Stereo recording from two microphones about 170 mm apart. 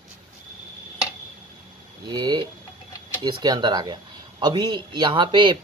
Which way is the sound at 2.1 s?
25° right (ahead or behind).